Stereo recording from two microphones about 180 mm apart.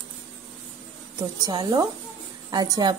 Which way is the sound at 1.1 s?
20° right (ahead or behind).